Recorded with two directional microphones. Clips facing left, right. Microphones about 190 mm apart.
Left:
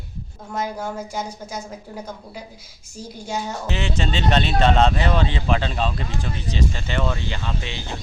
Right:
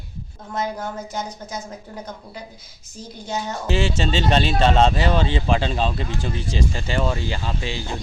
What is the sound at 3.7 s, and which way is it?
Speech, 30° right (ahead or behind).